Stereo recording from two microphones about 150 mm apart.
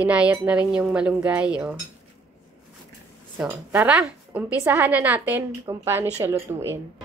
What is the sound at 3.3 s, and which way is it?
A woman's voice, 10° right (ahead or behind).